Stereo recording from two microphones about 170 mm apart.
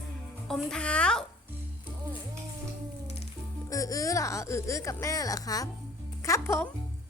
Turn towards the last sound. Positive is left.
turn(degrees=15)  # may be behind; listen again after turning